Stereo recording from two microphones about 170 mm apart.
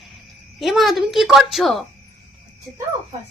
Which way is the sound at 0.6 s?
Centre (ahead or behind).